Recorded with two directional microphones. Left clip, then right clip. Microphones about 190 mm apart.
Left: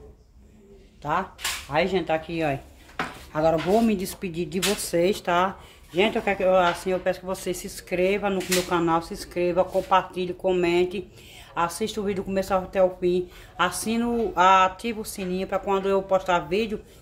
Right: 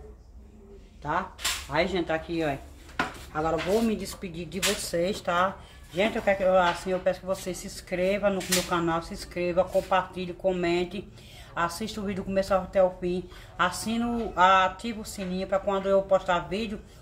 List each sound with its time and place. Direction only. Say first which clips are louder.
1.0 s speech: left 2 dB; 35° left (ahead or behind)
3.9 s speech: left 5 dB; 35° left (ahead or behind)